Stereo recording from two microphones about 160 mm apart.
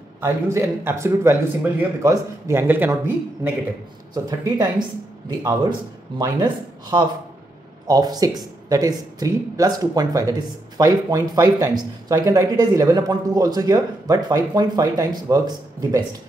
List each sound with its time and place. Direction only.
0.2 s speech: 15° right (ahead or behind)
4.1 s speech: 25° right (ahead or behind)
6.1 s speech: 25° right (ahead or behind)